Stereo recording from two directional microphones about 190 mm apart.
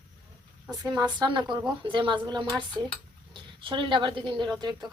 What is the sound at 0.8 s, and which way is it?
A woman's voice, 20° right (ahead or behind).